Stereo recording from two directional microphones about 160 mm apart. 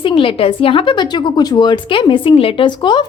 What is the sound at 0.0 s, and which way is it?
A woman's voice, 30° left (ahead or behind).